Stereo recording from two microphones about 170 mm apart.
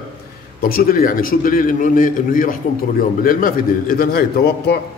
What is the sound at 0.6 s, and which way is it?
A man's voice, 60° left (ahead or behind).